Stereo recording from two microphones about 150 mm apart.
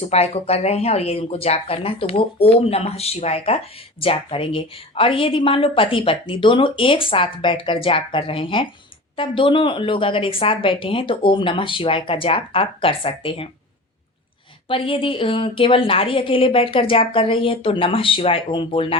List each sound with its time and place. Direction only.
0.1 s a woman's voice: 45° left (ahead or behind)
14.7 s a woman's voice: 35° left (ahead or behind)